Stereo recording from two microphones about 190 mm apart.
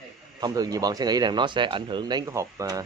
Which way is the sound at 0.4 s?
20° right (ahead or behind).